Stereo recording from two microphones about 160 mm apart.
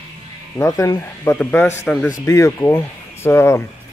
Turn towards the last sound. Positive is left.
turn(degrees=15)  # may be behind; listen again after turning